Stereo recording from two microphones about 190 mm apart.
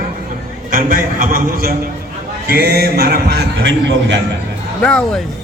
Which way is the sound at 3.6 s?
75° right (ahead or behind).